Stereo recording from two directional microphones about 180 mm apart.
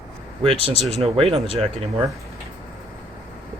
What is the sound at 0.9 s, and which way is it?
Speech, 35° right (ahead or behind).